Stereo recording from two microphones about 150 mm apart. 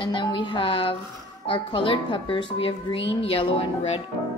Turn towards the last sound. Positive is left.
turn(degrees=40)  # may be behind; listen again after turning